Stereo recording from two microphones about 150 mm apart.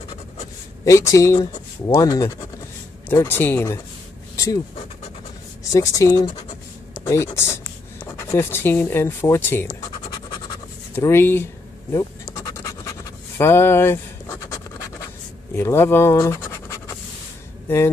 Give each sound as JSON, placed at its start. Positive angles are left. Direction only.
{"t": 0.8, "sound": "speech", "side_deg": 20}
{"t": 5.6, "sound": "speech", "side_deg": 20}
{"t": 11.0, "sound": "speech", "side_deg": 15}
{"t": 11.9, "sound": "scratch", "side_deg": 25}
{"t": 15.5, "sound": "speech", "side_deg": 15}